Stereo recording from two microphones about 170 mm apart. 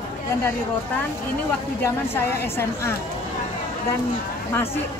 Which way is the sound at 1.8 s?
15° left (ahead or behind).